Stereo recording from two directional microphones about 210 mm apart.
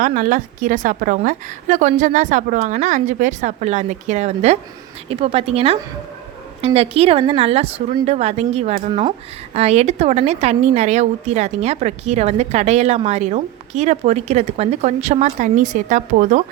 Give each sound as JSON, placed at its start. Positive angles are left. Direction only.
{"t": 0.0, "sound": "a woman's voice", "side_deg": -40}